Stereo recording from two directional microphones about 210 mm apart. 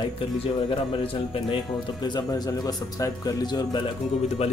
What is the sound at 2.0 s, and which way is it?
Speech, 20° left (ahead or behind).